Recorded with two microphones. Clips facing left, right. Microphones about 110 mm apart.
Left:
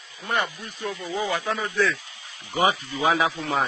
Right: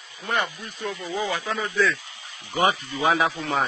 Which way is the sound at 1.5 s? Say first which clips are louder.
Right 2 dB; 5° left (ahead or behind).